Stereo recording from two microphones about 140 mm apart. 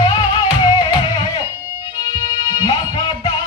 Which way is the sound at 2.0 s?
30° left (ahead or behind).